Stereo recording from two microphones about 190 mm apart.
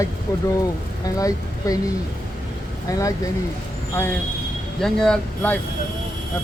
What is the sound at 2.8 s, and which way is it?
A man's voice, 15° left (ahead or behind).